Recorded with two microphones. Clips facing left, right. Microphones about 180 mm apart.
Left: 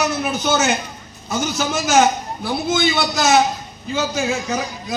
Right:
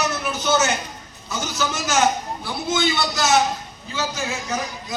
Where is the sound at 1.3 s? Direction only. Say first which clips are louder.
Left 5 dB; 55° left (ahead or behind).